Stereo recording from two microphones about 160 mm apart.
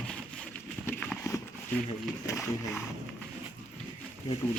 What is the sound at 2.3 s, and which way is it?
Speech, 20° left (ahead or behind).